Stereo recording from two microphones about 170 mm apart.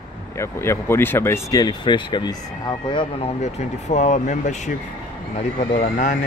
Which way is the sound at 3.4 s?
45° left (ahead or behind).